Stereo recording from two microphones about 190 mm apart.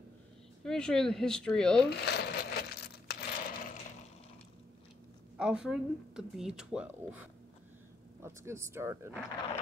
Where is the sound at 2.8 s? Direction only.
55° left (ahead or behind).